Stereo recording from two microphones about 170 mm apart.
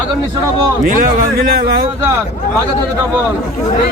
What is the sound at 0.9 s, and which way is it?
Speech, 55° right (ahead or behind).